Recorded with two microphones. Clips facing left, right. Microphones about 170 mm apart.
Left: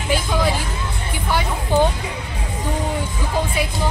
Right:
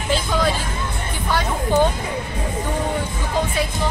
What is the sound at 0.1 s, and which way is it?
Speech, 10° left (ahead or behind).